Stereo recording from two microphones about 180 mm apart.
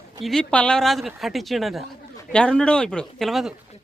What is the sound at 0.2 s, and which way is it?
Speech, centre (ahead or behind).